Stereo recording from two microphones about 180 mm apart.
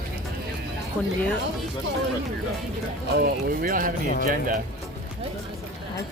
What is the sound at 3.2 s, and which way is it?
Speech, 55° right (ahead or behind).